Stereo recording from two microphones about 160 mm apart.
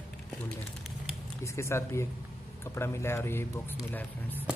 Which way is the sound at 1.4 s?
20° left (ahead or behind).